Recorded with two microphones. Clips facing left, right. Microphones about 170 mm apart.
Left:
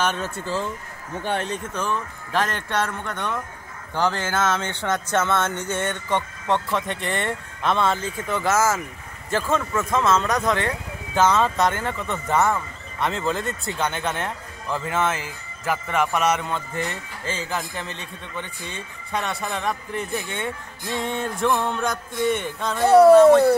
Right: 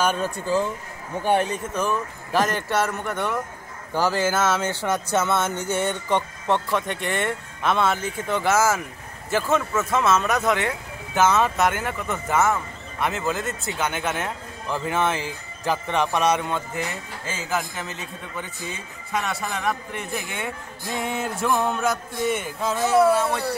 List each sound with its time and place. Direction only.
0.0 s speech: 10° right (ahead or behind)
6.7 s a man's voice: centre (ahead or behind)
22.9 s speech: 40° left (ahead or behind)